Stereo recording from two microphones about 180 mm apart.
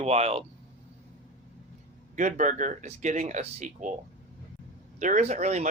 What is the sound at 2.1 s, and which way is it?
Speech, 45° right (ahead or behind).